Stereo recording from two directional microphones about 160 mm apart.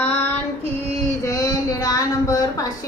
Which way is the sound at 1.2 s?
20° left (ahead or behind).